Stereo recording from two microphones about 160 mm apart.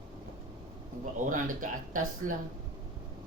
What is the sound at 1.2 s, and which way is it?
Speech, 55° right (ahead or behind).